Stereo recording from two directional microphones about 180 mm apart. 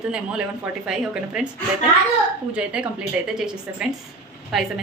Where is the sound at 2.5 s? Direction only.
5° right (ahead or behind).